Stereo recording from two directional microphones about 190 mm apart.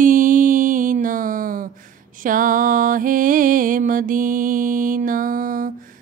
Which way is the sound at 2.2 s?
45° right (ahead or behind).